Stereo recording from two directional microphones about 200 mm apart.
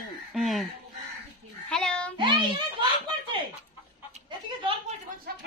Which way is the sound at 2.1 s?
25° right (ahead or behind).